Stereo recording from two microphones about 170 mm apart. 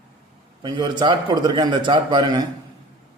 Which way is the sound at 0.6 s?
25° right (ahead or behind).